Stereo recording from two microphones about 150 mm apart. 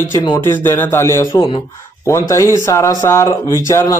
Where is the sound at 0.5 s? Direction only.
15° left (ahead or behind).